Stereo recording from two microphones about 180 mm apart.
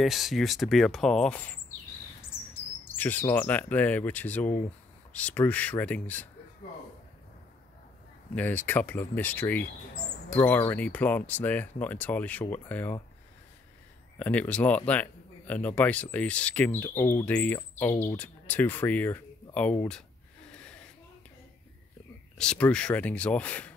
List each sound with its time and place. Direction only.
0.0 s speech: centre (ahead or behind)
3.0 s speech: 10° left (ahead or behind)
4.5 s speech: 45° left (ahead or behind)
5.1 s speech: 10° left (ahead or behind)
8.4 s speech: 10° left (ahead or behind)
14.1 s speech: 10° left (ahead or behind)
22.4 s speech: 5° left (ahead or behind)